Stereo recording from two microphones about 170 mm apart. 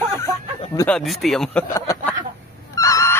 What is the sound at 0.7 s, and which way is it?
Speech, 5° left (ahead or behind).